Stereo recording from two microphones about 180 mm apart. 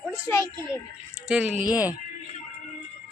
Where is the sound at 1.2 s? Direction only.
5° right (ahead or behind).